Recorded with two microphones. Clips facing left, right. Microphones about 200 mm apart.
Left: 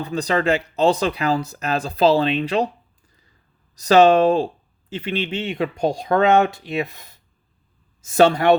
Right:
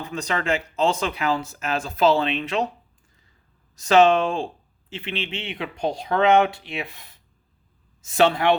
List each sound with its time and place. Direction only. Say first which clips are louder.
0.0 s speech: left 6 dB; 35° left (ahead or behind)
3.8 s speech: left 3 dB; 40° left (ahead or behind)